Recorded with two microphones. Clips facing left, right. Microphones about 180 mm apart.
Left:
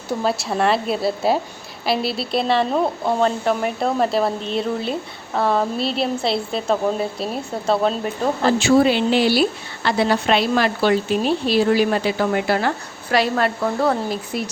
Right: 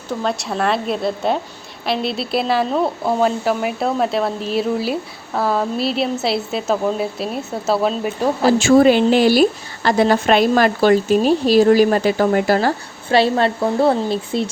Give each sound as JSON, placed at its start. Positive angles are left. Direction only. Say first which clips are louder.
{"t": 0.1, "sound": "speech", "louder": "even", "side_deg": 5}
{"t": 8.5, "sound": "a woman's voice", "louder": "right 5 dB", "side_deg": -45}